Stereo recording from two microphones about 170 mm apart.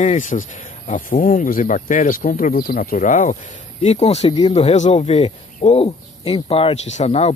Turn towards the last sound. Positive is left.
turn(degrees=40)  # may be behind; listen again after turning